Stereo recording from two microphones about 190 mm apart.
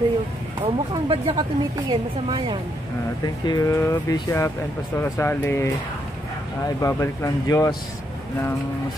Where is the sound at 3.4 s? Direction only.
20° left (ahead or behind).